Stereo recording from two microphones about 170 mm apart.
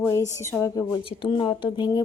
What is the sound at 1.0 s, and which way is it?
Speech, 30° left (ahead or behind).